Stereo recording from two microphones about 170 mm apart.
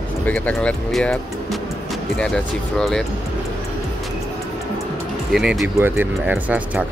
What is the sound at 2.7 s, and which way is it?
Speech, 5° left (ahead or behind).